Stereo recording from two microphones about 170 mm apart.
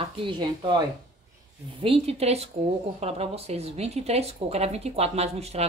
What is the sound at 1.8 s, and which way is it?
Speech, 35° right (ahead or behind).